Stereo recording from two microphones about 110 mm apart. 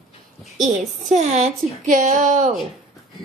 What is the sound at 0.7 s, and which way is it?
A woman's voice, 90° right.